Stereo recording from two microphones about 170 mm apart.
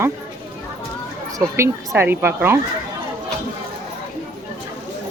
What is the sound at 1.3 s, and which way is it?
Speech, 15° right (ahead or behind).